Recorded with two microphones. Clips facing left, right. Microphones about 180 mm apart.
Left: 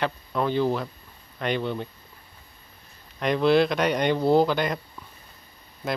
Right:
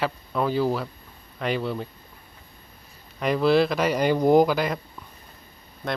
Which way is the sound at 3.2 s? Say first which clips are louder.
Even; 5° right (ahead or behind).